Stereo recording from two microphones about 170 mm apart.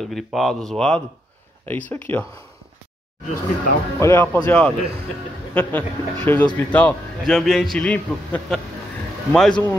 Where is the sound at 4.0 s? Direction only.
15° left (ahead or behind).